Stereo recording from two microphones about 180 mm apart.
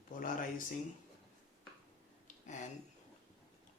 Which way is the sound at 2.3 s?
40° left (ahead or behind).